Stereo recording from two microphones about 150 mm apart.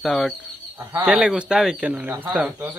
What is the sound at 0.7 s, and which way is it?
Speech, 20° right (ahead or behind).